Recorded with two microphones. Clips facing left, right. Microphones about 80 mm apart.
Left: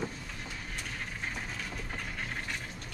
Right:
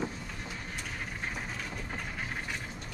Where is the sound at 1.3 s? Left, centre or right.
Centre.